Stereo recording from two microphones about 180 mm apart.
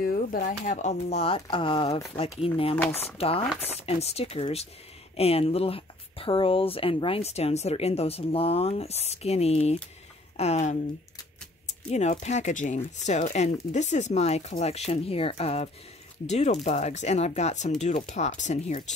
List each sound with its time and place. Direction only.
0.0 s speech: 55° left (ahead or behind); by 10.8 s 40° left (ahead or behind)
11.9 s speech: 40° left (ahead or behind)